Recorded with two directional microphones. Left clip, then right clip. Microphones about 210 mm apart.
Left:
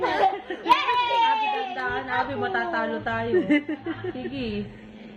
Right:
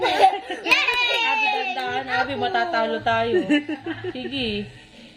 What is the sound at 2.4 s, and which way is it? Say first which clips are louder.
Speech: right 4 dB; 60° right (ahead or behind).